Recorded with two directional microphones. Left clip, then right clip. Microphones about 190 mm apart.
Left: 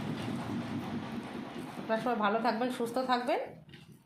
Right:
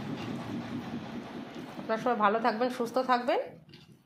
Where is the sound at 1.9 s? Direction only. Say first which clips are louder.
Right 3 dB; 30° right (ahead or behind).